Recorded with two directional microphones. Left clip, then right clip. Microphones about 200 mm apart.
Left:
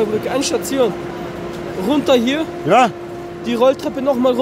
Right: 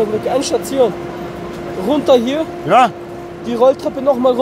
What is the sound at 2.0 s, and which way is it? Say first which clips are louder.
Speech: right 4 dB; 40° left (ahead or behind).